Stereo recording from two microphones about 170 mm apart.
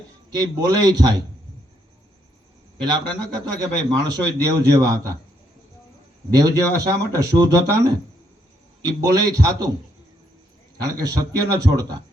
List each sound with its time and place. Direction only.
0.3 s a man's voice: 25° right (ahead or behind)
2.8 s a man's voice: 25° right (ahead or behind)
6.3 s a man's voice: 20° right (ahead or behind)
11.5 s a man's voice: 20° right (ahead or behind)